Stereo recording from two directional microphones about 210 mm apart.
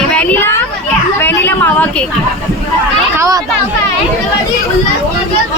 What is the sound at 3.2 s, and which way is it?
Children playing, 15° right (ahead or behind).